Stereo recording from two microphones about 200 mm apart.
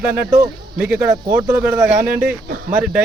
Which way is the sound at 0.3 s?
15° right (ahead or behind).